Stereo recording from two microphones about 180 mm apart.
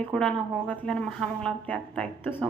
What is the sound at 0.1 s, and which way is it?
Speech, 5° left (ahead or behind).